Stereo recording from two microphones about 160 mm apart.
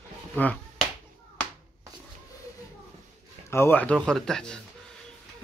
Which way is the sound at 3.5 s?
15° left (ahead or behind).